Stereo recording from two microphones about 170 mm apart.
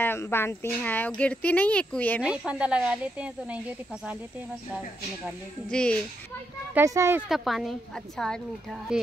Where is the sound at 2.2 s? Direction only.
5° right (ahead or behind).